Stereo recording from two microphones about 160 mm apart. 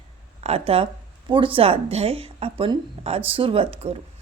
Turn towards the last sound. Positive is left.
turn(degrees=-35)  # may be behind; listen again after turning